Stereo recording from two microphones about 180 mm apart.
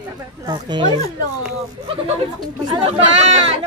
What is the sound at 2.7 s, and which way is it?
Speech, 35° right (ahead or behind).